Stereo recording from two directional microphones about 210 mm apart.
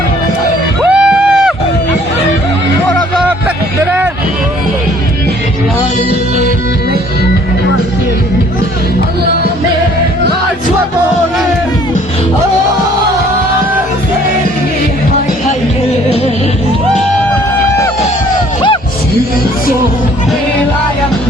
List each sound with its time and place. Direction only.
0.9 s music: 5° right (ahead or behind)